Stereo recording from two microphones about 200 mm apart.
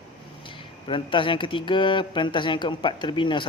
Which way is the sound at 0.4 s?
25° left (ahead or behind).